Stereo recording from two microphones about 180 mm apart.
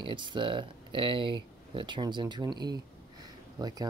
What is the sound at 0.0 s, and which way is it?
Speech, 25° right (ahead or behind).